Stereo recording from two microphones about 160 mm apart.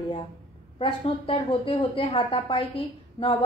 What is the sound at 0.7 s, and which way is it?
A woman's voice, 35° left (ahead or behind).